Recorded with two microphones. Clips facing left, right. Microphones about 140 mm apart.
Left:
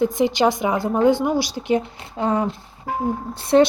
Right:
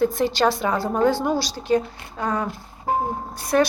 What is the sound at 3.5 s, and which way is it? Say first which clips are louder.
Speech: left 5 dB; 25° left (ahead or behind).